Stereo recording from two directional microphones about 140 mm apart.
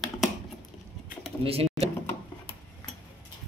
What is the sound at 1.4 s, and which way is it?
Speech, 45° right (ahead or behind).